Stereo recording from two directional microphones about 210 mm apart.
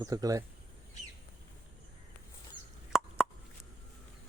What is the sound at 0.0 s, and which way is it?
Speech, 15° right (ahead or behind).